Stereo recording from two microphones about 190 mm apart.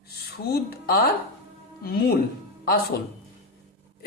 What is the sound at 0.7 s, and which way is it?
A man's voice, 55° left (ahead or behind).